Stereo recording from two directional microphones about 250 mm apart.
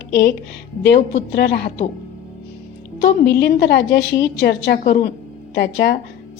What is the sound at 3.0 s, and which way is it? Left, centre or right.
A woman's voice, left.